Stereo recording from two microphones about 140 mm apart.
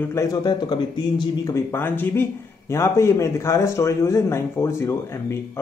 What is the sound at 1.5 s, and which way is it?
Speech, 15° left (ahead or behind).